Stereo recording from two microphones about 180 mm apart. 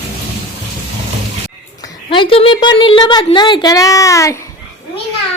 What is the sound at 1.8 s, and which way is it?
A woman's voice, 25° left (ahead or behind).